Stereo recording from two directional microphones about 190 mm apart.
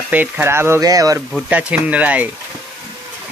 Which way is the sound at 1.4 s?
5° right (ahead or behind).